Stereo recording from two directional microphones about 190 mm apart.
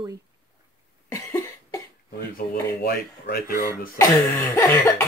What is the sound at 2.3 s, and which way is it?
Speech, 55° left (ahead or behind).